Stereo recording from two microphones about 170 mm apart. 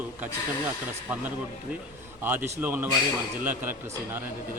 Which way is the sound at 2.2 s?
10° right (ahead or behind).